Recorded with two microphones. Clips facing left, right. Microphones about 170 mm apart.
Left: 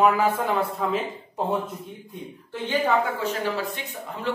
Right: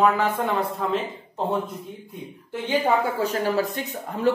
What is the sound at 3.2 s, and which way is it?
Speech, 45° right (ahead or behind).